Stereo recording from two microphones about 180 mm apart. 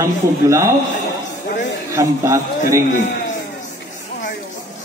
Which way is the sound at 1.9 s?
15° right (ahead or behind).